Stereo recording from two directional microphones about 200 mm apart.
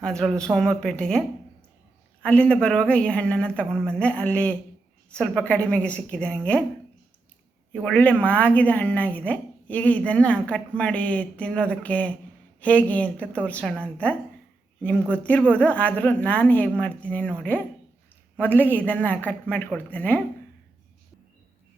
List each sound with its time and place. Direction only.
0.0 s speech: 5° left (ahead or behind)
2.2 s a woman's voice: 5° left (ahead or behind)
7.9 s a woman's voice: 10° left (ahead or behind)